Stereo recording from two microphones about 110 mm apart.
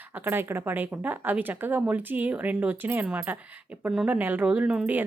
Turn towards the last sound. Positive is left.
turn(degrees=-10)  # may be behind; listen again after turning